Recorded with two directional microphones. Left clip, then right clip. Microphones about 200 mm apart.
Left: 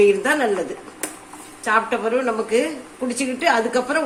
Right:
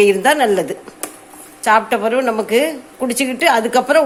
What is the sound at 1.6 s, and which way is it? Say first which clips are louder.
A woman's voice: right 6 dB; 50° right (ahead or behind).